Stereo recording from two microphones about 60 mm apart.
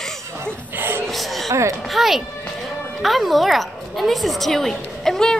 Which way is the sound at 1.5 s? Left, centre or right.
Right.